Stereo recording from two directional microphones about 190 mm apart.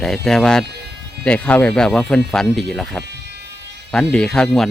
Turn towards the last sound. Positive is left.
turn(degrees=0)  # may be behind; listen again after turning